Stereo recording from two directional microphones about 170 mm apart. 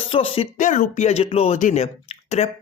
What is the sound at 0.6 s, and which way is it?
Speech, 45° left (ahead or behind).